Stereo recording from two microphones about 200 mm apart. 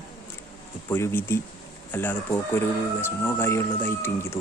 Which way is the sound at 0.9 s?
10° left (ahead or behind).